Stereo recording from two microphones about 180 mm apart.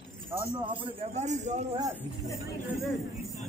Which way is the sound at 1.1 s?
40° right (ahead or behind).